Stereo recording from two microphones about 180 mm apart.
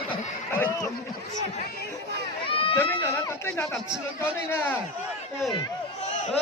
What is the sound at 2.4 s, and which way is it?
Run, 30° left (ahead or behind).